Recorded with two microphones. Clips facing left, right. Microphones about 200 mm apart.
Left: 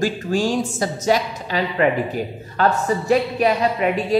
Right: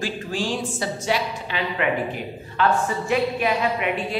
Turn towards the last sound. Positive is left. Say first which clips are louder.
# left 6 dB
turn(degrees=40)  # may be behind; listen again after turning